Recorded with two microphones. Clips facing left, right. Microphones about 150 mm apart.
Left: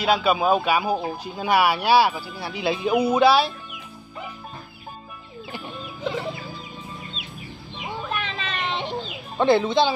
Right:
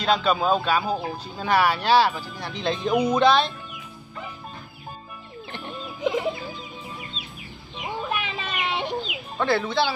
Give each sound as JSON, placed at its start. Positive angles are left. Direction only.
{"t": 0.0, "sound": "speech", "side_deg": 10}
{"t": 8.1, "sound": "chicken", "side_deg": -10}
{"t": 9.4, "sound": "speech", "side_deg": 20}